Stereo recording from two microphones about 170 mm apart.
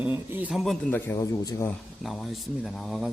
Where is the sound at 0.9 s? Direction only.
15° left (ahead or behind).